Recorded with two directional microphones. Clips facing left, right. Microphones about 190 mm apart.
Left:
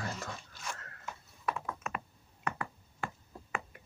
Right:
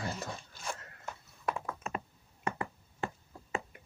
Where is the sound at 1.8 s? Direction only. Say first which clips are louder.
Right 1 dB; 30° right (ahead or behind).